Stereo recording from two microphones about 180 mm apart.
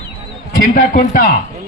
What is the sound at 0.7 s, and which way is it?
Speech, 50° left (ahead or behind).